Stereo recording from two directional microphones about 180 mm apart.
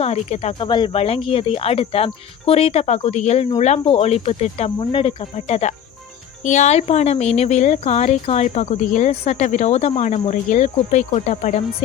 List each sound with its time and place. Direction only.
0.0 s speech: 35° left (ahead or behind)